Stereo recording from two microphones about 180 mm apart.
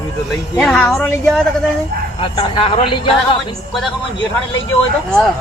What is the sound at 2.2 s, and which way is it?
Speech, 30° left (ahead or behind).